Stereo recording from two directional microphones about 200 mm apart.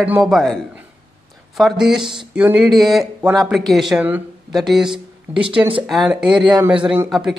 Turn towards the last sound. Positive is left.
turn(degrees=0)  # may be behind; listen again after turning